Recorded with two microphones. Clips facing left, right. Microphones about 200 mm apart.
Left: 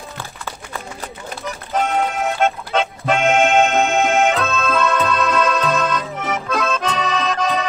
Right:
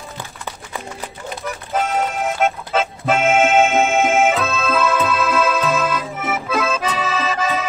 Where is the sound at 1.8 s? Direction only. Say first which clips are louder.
Left 1 dB; 5° right (ahead or behind).